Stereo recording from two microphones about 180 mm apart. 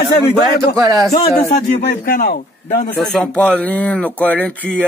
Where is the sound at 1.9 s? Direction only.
55° left (ahead or behind).